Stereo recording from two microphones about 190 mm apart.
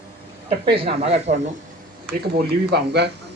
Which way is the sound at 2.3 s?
60° right (ahead or behind).